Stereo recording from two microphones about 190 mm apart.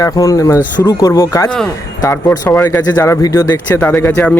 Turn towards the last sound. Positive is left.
turn(degrees=10)  # may be behind; listen again after turning